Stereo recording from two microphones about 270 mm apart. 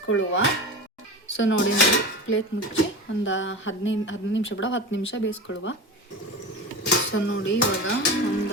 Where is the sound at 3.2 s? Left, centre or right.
Left.